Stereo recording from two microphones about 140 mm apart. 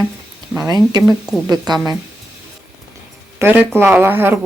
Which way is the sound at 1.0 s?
5° right (ahead or behind).